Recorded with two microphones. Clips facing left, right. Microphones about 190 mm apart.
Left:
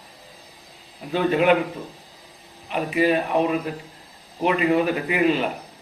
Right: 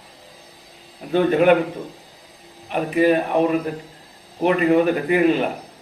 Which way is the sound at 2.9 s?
45° right (ahead or behind).